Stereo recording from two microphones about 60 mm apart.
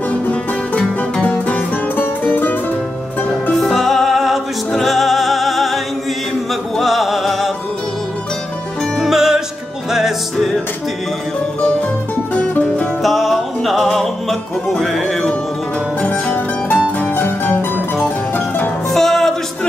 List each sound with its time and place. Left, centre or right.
0.3 s music: centre
1.2 s music: left
3.5 s music: centre
6.8 s music: centre
9.0 s music: centre
13.0 s music: centre
16.0 s music: left
17.0 s music: left
18.9 s music: centre